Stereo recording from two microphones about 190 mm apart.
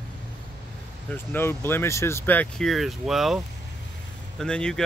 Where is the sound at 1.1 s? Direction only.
10° left (ahead or behind).